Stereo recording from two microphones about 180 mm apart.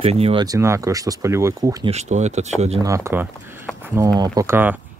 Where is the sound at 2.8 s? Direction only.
15° right (ahead or behind).